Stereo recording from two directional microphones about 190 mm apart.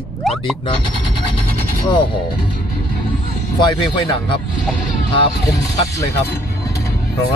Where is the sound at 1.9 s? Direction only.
25° left (ahead or behind).